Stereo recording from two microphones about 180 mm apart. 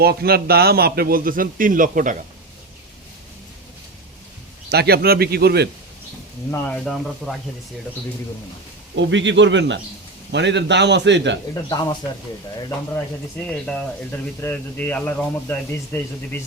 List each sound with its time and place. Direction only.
0.0 s speech: 60° right (ahead or behind)
4.7 s speech: 60° right (ahead or behind)
6.5 s a man's voice: 10° left (ahead or behind)
6.8 s speech: centre (ahead or behind)
9.0 s a man's voice: 90° right
11.7 s speech: 25° left (ahead or behind)
13.5 s a man's voice: 5° left (ahead or behind)